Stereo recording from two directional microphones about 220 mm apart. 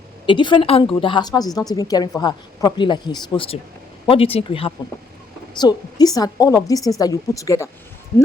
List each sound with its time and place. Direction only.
0.3 s a woman's voice: 20° left (ahead or behind)